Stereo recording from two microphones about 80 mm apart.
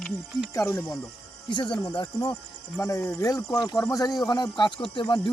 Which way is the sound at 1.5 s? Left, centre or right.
Left.